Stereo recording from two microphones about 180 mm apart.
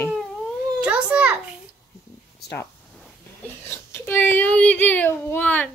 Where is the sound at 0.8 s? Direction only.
5° right (ahead or behind).